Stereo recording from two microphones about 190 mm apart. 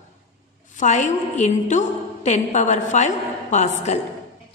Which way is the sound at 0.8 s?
40° left (ahead or behind).